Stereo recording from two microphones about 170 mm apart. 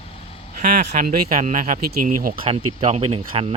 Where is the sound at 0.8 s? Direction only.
45° right (ahead or behind).